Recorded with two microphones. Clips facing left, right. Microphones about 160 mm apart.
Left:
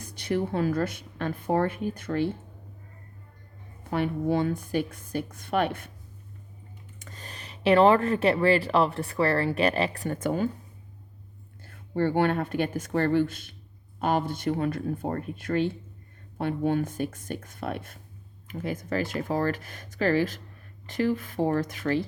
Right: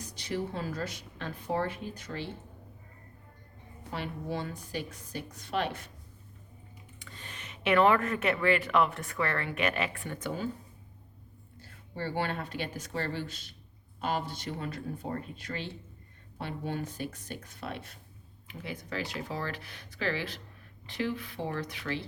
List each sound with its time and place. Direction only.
0.0 s a woman's voice: 55° left (ahead or behind)
3.8 s a woman's voice: 55° left (ahead or behind)
7.0 s speech: 40° left (ahead or behind)
11.6 s speech: 55° left (ahead or behind)